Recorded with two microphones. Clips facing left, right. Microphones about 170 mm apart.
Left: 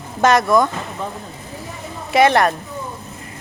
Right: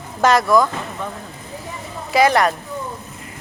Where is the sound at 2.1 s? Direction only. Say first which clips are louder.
Left 1 dB; 25° left (ahead or behind).